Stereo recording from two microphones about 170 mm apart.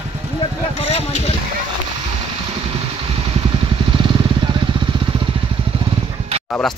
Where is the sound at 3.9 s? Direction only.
30° right (ahead or behind).